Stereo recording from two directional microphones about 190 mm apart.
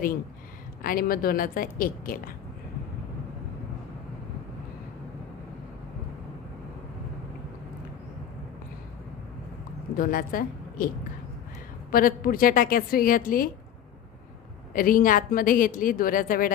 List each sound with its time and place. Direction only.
0.8 s speech: 50° left (ahead or behind)
9.9 s a woman's voice: 50° left (ahead or behind)
11.9 s speech: 50° left (ahead or behind)
14.7 s speech: 45° left (ahead or behind)